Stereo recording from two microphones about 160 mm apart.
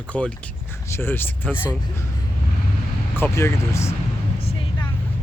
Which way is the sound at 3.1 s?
15° left (ahead or behind).